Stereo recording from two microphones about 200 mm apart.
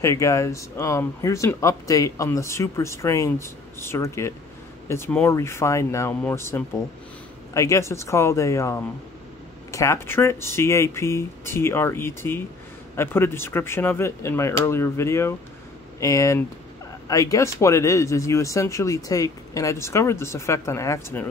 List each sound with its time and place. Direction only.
0.0 s speech: 15° left (ahead or behind)